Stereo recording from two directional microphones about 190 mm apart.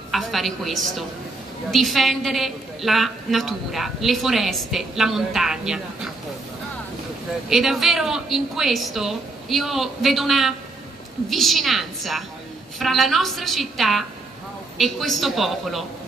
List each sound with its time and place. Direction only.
0.1 s a woman's voice: centre (ahead or behind)
7.4 s a woman's voice: centre (ahead or behind)